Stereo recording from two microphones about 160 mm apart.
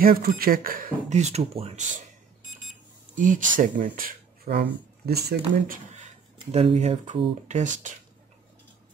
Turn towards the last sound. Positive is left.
turn(degrees=-50)  # may be behind; listen again after turning